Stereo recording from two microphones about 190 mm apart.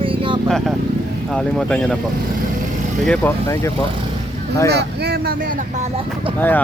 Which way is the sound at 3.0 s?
5° left (ahead or behind).